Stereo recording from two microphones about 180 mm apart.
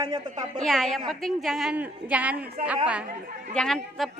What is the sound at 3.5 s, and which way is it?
Speech, 5° left (ahead or behind).